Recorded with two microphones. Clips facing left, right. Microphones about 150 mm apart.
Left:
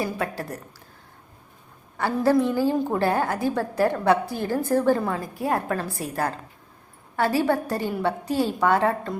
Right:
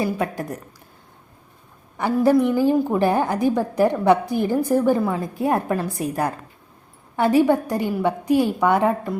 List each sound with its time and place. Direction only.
0.0 s speech: 20° right (ahead or behind)
2.2 s a woman's voice: 15° right (ahead or behind)
5.2 s a woman's voice: 25° right (ahead or behind)